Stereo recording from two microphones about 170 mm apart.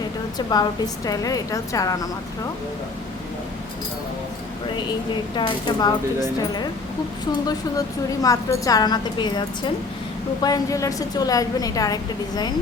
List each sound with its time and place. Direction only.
0.3 s a woman's voice: 25° left (ahead or behind)
5.4 s a woman's voice: 25° left (ahead or behind)
7.4 s a woman's voice: 20° left (ahead or behind)